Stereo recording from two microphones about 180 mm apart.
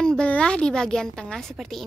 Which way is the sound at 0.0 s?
5° left (ahead or behind).